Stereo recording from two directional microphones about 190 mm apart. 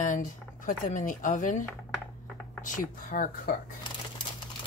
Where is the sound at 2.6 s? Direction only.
45° left (ahead or behind).